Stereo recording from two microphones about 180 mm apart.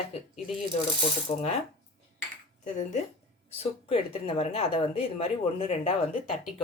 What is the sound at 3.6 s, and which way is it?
A woman's voice, 30° left (ahead or behind).